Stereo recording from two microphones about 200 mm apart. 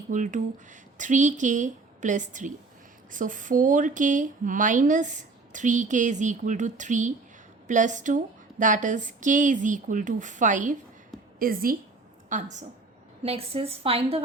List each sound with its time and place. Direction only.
0.1 s a woman's voice: 40° right (ahead or behind)